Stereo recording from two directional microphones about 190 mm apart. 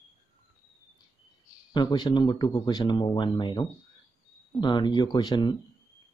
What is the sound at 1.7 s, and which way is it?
Speech, 25° left (ahead or behind).